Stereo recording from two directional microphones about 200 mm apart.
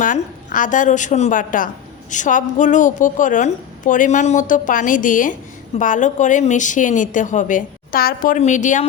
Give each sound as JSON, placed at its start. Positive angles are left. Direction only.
{"t": 0.0, "sound": "a woman's voice", "side_deg": 40}